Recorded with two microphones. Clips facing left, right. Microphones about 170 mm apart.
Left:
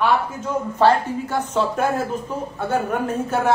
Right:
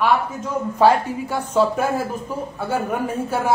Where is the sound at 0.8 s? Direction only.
10° right (ahead or behind).